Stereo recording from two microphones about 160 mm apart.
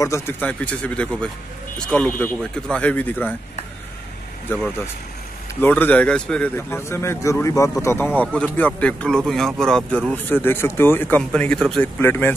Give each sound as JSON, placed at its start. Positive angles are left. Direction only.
{"t": 0.0, "sound": "a man's voice", "side_deg": 15}
{"t": 4.5, "sound": "a man's voice", "side_deg": 5}